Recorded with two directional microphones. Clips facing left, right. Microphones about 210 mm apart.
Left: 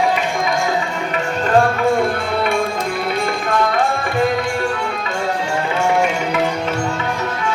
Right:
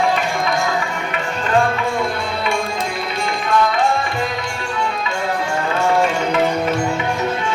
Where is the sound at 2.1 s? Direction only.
55° left (ahead or behind).